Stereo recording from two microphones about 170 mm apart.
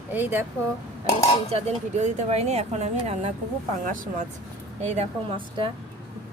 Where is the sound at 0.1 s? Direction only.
10° right (ahead or behind).